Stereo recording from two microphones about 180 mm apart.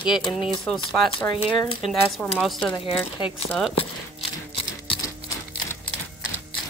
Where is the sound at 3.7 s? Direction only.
30° left (ahead or behind).